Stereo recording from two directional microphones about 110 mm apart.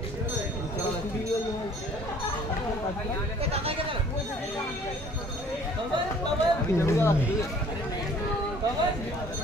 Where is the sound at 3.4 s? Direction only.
65° right (ahead or behind).